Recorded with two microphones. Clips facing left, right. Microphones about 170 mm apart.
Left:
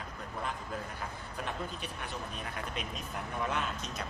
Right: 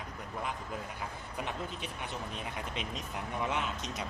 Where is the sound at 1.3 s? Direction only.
20° right (ahead or behind).